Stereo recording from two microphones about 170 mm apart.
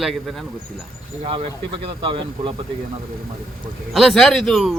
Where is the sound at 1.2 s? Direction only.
35° right (ahead or behind).